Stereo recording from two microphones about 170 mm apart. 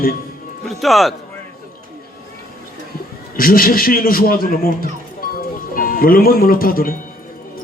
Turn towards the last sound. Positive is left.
turn(degrees=60)  # may be behind; listen again after turning